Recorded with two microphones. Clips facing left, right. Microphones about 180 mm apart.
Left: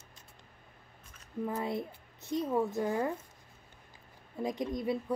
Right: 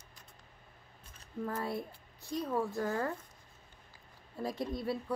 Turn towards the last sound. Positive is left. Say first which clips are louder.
# left 3 dB
turn(degrees=15)  # may be behind; listen again after turning